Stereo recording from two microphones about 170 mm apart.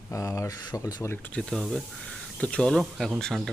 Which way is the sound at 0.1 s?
20° left (ahead or behind).